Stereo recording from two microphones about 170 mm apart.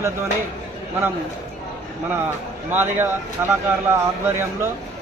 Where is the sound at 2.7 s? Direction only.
10° right (ahead or behind).